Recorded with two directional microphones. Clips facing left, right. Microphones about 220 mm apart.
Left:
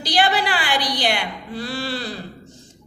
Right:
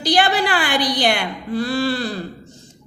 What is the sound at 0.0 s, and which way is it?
A woman's voice, 50° right (ahead or behind).